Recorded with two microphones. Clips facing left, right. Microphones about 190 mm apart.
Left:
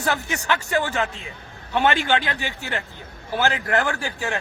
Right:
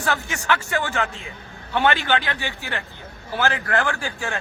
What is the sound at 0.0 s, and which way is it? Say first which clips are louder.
Speech: left 1 dB; 20° left (ahead or behind).